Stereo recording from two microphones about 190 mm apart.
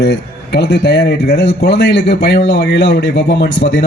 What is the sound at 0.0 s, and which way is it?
Speech, 60° left (ahead or behind).